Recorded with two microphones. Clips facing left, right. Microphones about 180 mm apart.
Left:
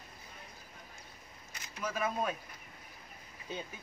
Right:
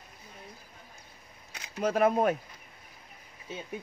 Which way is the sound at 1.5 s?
65° right (ahead or behind).